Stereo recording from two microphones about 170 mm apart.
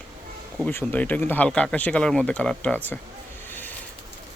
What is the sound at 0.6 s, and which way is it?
Speech, 10° left (ahead or behind).